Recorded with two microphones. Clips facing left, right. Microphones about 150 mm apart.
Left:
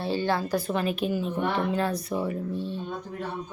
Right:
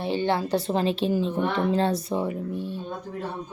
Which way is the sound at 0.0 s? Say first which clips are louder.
Right 2 dB; 20° right (ahead or behind).